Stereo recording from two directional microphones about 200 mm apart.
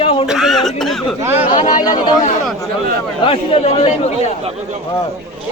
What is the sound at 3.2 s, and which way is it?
Speech, 30° left (ahead or behind).